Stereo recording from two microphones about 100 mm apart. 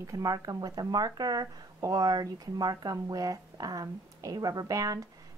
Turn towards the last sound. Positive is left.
turn(degrees=-35)  # may be behind; listen again after turning